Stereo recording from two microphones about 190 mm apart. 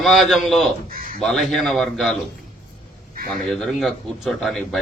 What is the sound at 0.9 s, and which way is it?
Crow, 50° right (ahead or behind).